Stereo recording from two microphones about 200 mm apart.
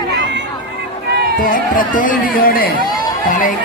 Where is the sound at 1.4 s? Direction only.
45° left (ahead or behind).